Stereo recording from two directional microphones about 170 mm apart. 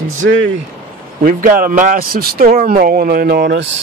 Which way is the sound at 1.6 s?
50° right (ahead or behind).